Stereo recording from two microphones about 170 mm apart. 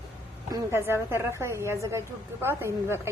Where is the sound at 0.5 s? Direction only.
15° right (ahead or behind).